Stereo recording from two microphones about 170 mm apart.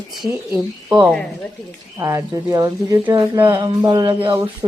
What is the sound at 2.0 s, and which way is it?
Speech, 15° right (ahead or behind).